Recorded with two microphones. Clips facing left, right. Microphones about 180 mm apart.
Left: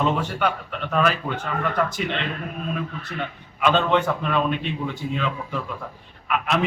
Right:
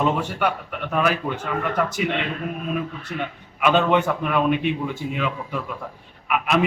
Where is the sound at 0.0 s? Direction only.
10° right (ahead or behind).